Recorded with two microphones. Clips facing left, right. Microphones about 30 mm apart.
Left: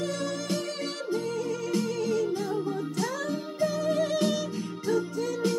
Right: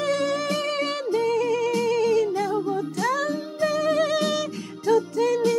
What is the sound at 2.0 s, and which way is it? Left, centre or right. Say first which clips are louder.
Music: right 6 dB; right.